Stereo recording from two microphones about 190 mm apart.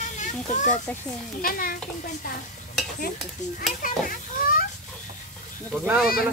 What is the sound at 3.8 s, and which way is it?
Children playing, 50° left (ahead or behind).